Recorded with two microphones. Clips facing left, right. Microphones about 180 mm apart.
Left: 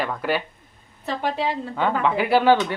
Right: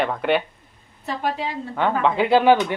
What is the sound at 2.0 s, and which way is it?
Speech, 20° right (ahead or behind).